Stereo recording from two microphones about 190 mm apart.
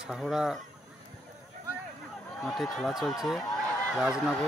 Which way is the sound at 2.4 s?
Centre (ahead or behind).